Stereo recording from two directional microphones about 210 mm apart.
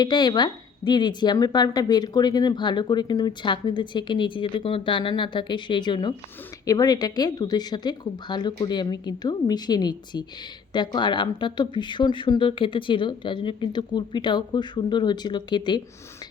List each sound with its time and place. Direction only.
0.0 s speech: 20° left (ahead or behind)